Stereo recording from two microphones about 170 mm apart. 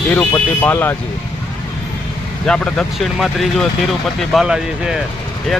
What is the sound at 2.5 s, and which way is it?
Speech, 5° left (ahead or behind).